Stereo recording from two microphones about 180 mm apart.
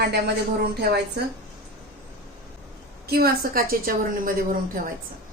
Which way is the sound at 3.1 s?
55° right (ahead or behind).